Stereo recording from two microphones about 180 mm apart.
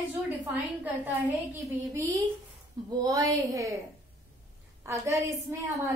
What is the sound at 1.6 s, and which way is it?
A woman's voice, 15° right (ahead or behind).